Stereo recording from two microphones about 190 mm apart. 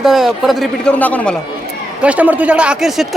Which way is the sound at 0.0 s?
Centre (ahead or behind).